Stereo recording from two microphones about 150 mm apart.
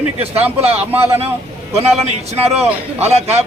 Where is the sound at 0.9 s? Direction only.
15° right (ahead or behind).